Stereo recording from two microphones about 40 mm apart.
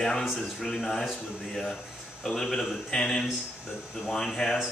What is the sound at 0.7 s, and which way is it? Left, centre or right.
Speech, centre.